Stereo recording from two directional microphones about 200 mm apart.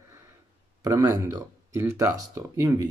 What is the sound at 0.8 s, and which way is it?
Speech, 15° right (ahead or behind).